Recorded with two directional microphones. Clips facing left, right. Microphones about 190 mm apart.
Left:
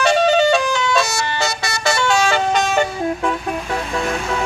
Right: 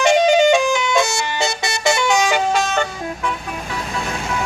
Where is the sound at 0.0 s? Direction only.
15° right (ahead or behind).